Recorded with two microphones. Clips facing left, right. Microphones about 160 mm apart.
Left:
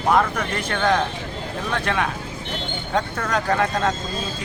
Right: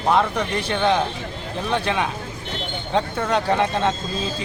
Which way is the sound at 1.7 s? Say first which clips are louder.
Right 2 dB; 25° right (ahead or behind).